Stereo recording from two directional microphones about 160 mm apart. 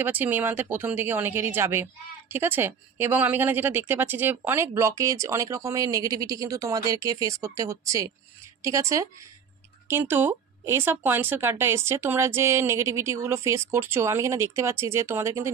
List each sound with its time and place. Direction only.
0.0 s a woman's voice: 10° right (ahead or behind)